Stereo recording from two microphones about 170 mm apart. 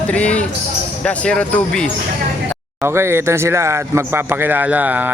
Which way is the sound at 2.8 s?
15° right (ahead or behind).